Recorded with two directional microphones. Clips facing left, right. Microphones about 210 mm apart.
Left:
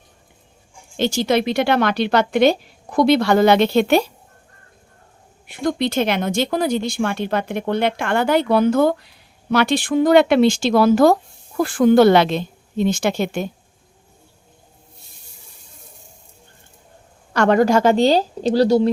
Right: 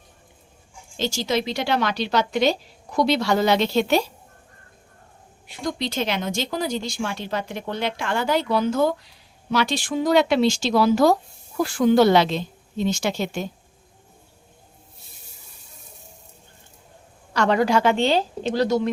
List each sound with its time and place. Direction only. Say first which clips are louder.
0.9 s speech: left 6 dB; 60° left (ahead or behind)
5.5 s speech: left 7 dB; 55° left (ahead or behind)
17.3 s a woman's voice: left 5 dB; 50° left (ahead or behind); by 18.9 s 35° left (ahead or behind)